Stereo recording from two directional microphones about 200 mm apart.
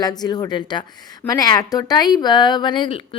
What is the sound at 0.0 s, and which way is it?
Speech, 20° left (ahead or behind).